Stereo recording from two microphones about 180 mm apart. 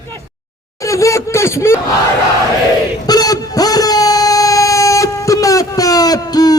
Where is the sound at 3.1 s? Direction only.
20° left (ahead or behind).